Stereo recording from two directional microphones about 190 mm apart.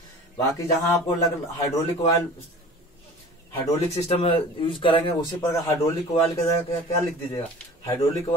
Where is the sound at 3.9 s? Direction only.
30° left (ahead or behind).